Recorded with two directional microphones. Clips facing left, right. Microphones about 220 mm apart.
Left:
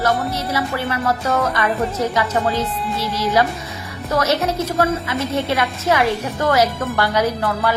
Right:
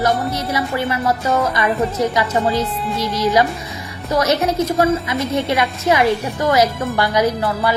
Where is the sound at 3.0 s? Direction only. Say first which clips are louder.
Right 2 dB; 15° right (ahead or behind).